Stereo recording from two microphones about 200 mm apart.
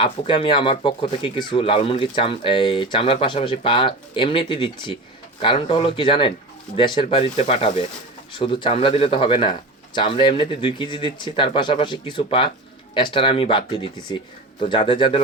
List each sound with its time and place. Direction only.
0.0 s speech: 25° left (ahead or behind)